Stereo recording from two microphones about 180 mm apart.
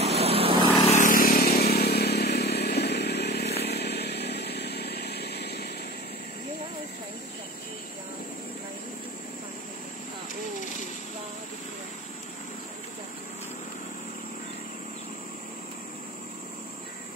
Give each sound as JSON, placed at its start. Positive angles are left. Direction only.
{"t": 0.0, "sound": "vehicle", "side_deg": -35}
{"t": 0.8, "sound": "motorcycle", "side_deg": 45}
{"t": 3.6, "sound": "chainsaw", "side_deg": 65}